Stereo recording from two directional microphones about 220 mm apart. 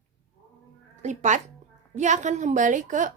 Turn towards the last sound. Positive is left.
turn(degrees=-35)  # may be behind; listen again after turning